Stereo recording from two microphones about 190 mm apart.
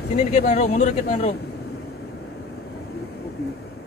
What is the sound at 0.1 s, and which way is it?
Speech, 35° left (ahead or behind).